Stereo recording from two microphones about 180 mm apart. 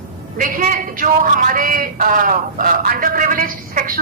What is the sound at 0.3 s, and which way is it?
A man's voice, 50° right (ahead or behind).